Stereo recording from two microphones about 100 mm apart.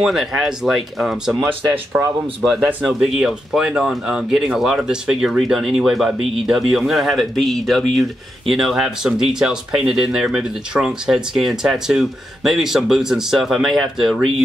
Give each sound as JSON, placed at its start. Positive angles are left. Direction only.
{"t": 0.0, "sound": "speech", "side_deg": -5}
{"t": 1.9, "sound": "speech", "side_deg": -20}
{"t": 2.4, "sound": "speech", "side_deg": -5}